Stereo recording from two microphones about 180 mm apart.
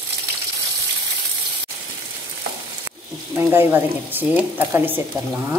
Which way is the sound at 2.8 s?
15° right (ahead or behind).